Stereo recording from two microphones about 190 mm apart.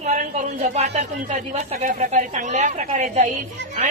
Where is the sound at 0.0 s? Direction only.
40° right (ahead or behind).